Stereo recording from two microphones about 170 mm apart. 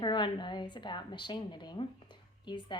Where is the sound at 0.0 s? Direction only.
25° left (ahead or behind).